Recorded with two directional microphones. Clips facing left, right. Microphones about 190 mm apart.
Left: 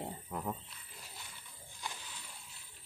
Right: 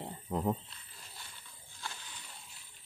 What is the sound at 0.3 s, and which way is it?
Speech, 25° right (ahead or behind).